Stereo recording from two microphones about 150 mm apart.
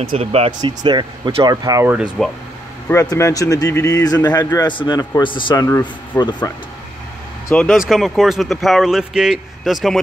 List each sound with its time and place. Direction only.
0.2 s speech: 45° right (ahead or behind)
0.5 s speech: 30° right (ahead or behind)
2.2 s speech: centre (ahead or behind)
2.9 s speech: 20° left (ahead or behind)
7.4 s speech: 5° left (ahead or behind)